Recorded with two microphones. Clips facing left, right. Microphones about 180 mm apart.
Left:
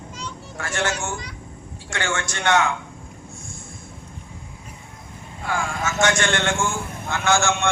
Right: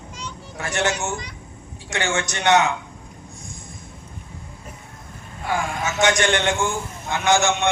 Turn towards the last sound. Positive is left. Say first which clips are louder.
# right 2 dB
turn(degrees=-20)  # may be behind; listen again after turning